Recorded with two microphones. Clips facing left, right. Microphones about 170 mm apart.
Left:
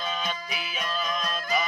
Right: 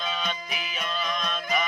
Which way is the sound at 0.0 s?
5° left (ahead or behind).